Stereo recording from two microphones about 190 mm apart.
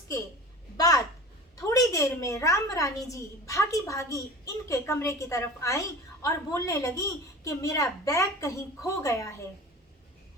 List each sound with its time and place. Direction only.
0.8 s a woman's voice: 20° left (ahead or behind)